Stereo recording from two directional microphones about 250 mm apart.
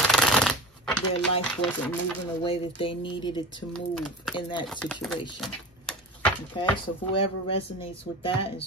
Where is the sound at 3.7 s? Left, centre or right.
Centre.